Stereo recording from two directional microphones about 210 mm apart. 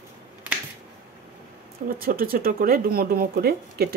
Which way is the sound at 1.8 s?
45° right (ahead or behind).